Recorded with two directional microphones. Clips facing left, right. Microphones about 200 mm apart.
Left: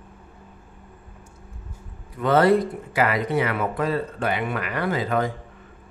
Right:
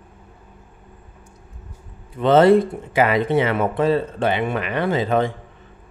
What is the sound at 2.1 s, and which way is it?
A man's voice, 25° right (ahead or behind).